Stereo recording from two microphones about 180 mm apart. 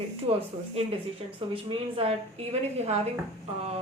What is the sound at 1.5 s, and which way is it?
A woman's voice, 30° right (ahead or behind).